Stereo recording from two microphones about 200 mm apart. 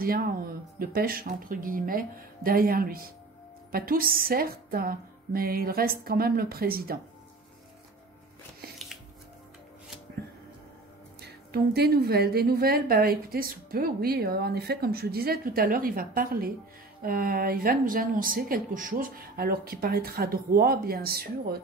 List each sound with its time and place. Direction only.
0.0 s a woman's voice: 45° right (ahead or behind)
11.1 s a woman's voice: 55° right (ahead or behind)